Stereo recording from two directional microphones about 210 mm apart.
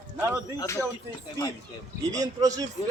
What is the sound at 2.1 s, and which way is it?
Speech, 15° right (ahead or behind).